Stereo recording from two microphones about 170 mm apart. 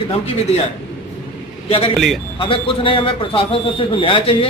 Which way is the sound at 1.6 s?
35° left (ahead or behind).